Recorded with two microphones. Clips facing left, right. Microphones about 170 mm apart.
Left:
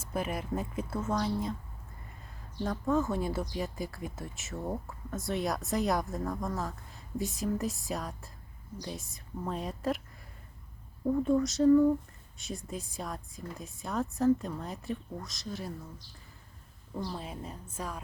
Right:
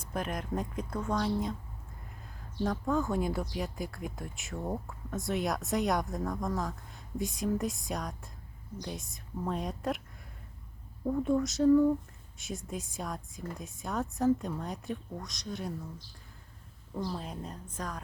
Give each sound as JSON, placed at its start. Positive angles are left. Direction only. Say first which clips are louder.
{"t": 0.0, "sound": "speech", "louder": "left 1 dB", "side_deg": 5}
{"t": 11.0, "sound": "speech", "louder": "left 2 dB", "side_deg": 0}
{"t": 16.9, "sound": "speech", "louder": "right 1 dB", "side_deg": 0}